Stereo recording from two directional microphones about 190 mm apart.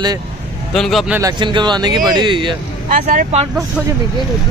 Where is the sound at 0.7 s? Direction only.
Centre (ahead or behind).